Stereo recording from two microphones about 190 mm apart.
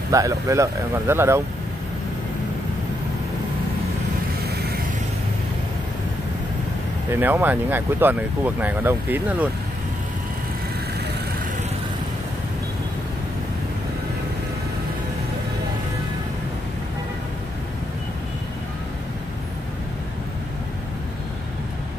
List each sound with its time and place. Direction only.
0.1 s speech: 15° right (ahead or behind)
4.5 s vehicle: 55° right (ahead or behind)
7.1 s speech: 10° right (ahead or behind)